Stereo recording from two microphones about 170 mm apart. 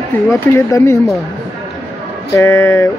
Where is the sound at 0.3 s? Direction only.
15° left (ahead or behind).